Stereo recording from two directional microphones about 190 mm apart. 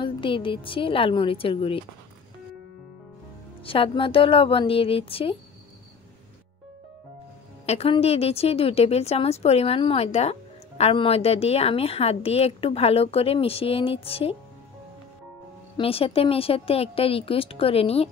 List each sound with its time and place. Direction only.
0.0 s speech: 25° left (ahead or behind)
3.6 s speech: 30° left (ahead or behind)
7.6 s a woman's voice: 30° left (ahead or behind)
15.8 s speech: 30° left (ahead or behind)